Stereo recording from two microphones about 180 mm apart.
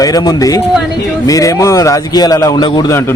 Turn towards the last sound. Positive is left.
turn(degrees=20)  # may be behind; listen again after turning